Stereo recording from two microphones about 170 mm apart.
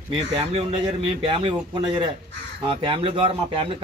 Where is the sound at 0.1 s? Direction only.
30° right (ahead or behind).